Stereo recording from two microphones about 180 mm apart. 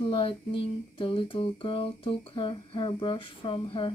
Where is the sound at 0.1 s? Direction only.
30° left (ahead or behind).